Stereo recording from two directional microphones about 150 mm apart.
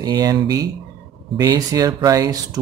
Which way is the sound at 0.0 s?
25° right (ahead or behind).